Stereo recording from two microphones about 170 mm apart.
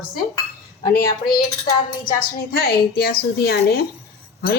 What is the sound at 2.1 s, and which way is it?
A woman's voice, 60° left (ahead or behind).